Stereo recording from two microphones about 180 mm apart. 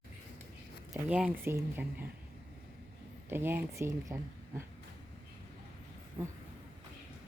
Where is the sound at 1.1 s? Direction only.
5° right (ahead or behind).